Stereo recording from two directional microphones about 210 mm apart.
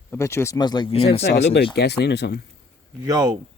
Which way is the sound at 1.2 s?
55° left (ahead or behind).